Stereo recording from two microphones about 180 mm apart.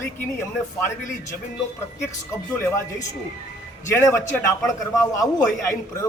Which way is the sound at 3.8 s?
15° left (ahead or behind).